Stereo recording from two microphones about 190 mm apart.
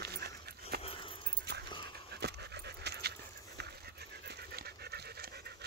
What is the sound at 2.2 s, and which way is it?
Dog, 60° right (ahead or behind).